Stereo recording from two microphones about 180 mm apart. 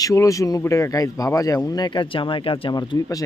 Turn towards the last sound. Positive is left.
turn(degrees=20)  # may be behind; listen again after turning